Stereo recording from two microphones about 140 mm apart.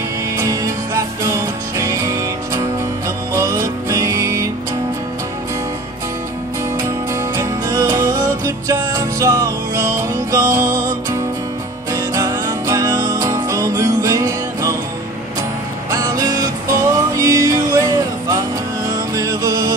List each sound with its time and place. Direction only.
0.4 s music: 25° right (ahead or behind)
7.3 s music: 25° right (ahead or behind)
15.9 s music: 25° right (ahead or behind)